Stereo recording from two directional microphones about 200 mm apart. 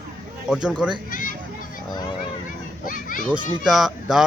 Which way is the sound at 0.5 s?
5° right (ahead or behind).